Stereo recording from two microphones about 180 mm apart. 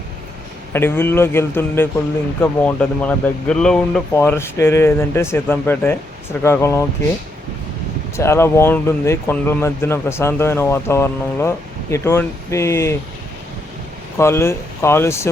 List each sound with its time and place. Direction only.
0.7 s speech: 10° left (ahead or behind)
8.1 s speech: 15° left (ahead or behind)
14.2 s speech: 15° left (ahead or behind)